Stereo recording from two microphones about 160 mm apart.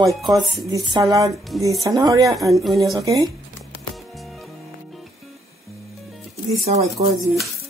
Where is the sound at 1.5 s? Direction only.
Centre (ahead or behind).